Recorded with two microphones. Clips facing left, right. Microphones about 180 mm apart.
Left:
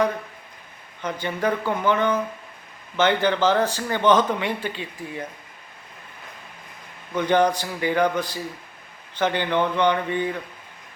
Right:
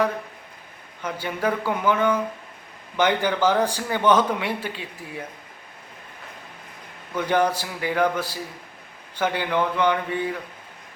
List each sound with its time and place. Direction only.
1.0 s a man's voice: 5° right (ahead or behind)
7.2 s a man's voice: 5° right (ahead or behind)